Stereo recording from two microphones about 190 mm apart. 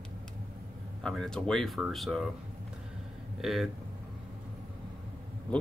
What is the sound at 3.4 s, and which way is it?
Speech, centre (ahead or behind).